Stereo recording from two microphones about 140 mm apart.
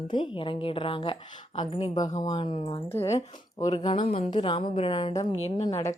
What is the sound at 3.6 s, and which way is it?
Speech, 30° left (ahead or behind).